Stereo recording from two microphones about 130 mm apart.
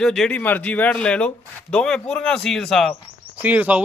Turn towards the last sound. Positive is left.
turn(degrees=-10)  # may be behind; listen again after turning